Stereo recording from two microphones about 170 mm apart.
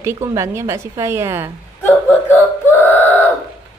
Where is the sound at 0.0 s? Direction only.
15° right (ahead or behind).